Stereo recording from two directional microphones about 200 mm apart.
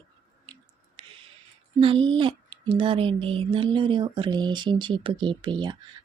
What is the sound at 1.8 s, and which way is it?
Speech, 25° right (ahead or behind).